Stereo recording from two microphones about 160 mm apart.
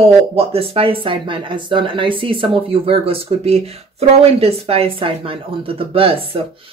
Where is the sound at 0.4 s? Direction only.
35° right (ahead or behind).